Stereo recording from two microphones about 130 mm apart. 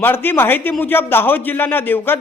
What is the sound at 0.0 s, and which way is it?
A man's voice, 15° left (ahead or behind).